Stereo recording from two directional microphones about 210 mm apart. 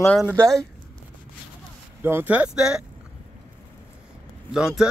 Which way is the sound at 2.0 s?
10° right (ahead or behind).